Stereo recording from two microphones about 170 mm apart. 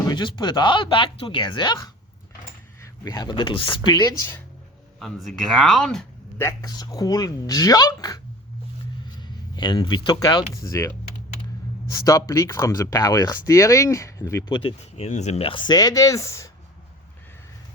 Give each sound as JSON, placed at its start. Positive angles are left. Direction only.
{"t": 0.1, "sound": "speech", "side_deg": 30}
{"t": 3.0, "sound": "speech", "side_deg": 20}
{"t": 4.9, "sound": "speech", "side_deg": 0}
{"t": 6.4, "sound": "speech", "side_deg": 20}
{"t": 9.2, "sound": "speech", "side_deg": 25}
{"t": 14.5, "sound": "speech", "side_deg": 30}